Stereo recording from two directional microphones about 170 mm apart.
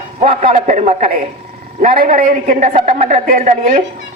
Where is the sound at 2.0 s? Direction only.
55° right (ahead or behind).